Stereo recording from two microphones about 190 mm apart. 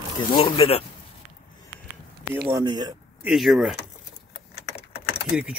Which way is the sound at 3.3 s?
Centre (ahead or behind).